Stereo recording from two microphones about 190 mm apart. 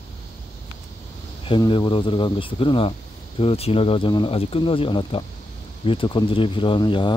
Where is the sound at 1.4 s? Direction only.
25° left (ahead or behind).